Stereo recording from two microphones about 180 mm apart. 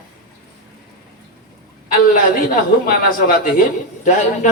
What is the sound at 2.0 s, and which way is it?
A man's voice, 50° left (ahead or behind).